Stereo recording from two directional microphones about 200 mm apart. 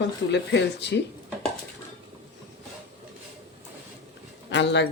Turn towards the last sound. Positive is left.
turn(degrees=60)  # may be behind; listen again after turning